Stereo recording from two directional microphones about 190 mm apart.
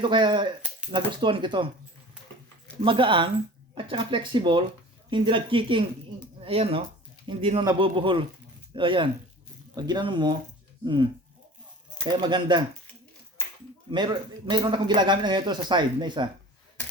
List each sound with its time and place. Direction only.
0.0 s a man's voice: 25° right (ahead or behind)
2.8 s a man's voice: 25° right (ahead or behind)
13.9 s a man's voice: 25° right (ahead or behind)